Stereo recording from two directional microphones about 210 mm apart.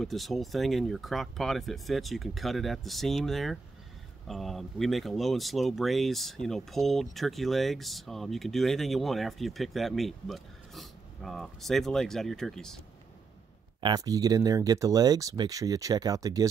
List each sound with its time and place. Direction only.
0.0 s speech: centre (ahead or behind)
13.7 s speech: 20° right (ahead or behind)